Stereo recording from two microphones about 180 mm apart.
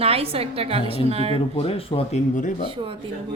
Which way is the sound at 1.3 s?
30° left (ahead or behind).